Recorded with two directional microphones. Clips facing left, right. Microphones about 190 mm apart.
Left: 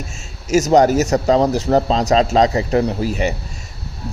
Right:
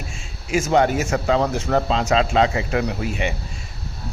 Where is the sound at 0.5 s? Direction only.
40° left (ahead or behind).